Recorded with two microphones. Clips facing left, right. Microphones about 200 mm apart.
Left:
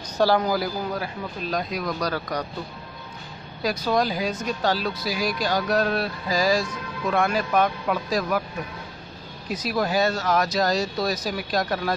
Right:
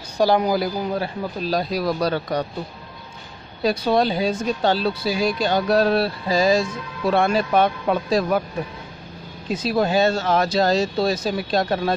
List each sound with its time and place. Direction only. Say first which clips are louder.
0.2 s speech: right 3 dB; 15° right (ahead or behind)
3.6 s speech: right 4 dB; 30° right (ahead or behind)
9.5 s speech: right 4 dB; 25° right (ahead or behind)